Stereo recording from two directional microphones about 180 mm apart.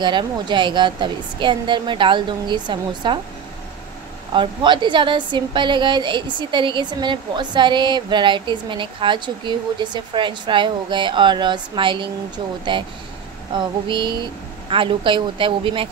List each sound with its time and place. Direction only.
0.0 s a woman's voice: 25° right (ahead or behind)
4.3 s a woman's voice: 25° right (ahead or behind)